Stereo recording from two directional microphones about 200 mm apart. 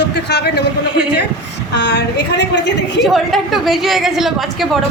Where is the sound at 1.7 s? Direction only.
60° left (ahead or behind).